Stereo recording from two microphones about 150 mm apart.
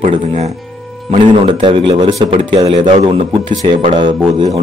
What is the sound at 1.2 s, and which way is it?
Speech, 35° right (ahead or behind).